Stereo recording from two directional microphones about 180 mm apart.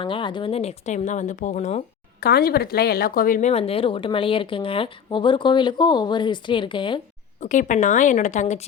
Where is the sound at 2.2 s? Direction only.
60° left (ahead or behind).